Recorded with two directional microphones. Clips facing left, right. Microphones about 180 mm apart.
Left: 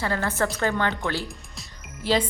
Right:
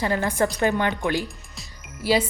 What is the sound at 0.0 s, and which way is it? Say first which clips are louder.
A woman's voice: right 3 dB; 15° right (ahead or behind).